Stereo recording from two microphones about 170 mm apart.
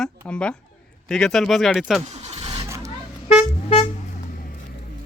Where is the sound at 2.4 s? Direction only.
25° right (ahead or behind).